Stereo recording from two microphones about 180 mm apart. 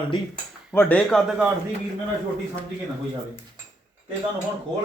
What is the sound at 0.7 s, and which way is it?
Speech, 10° left (ahead or behind).